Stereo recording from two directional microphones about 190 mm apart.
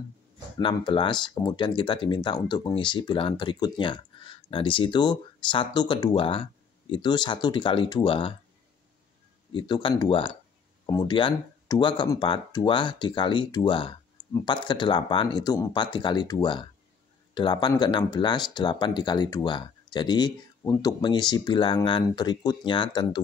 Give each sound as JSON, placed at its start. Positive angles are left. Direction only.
{"t": 0.6, "sound": "speech", "side_deg": 25}
{"t": 9.5, "sound": "speech", "side_deg": 25}